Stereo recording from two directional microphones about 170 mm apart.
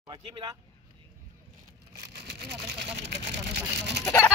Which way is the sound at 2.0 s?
75° right (ahead or behind).